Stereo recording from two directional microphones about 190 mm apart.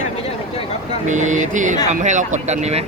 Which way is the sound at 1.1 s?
40° right (ahead or behind).